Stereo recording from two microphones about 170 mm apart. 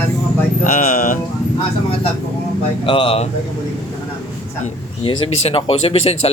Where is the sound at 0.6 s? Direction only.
55° left (ahead or behind).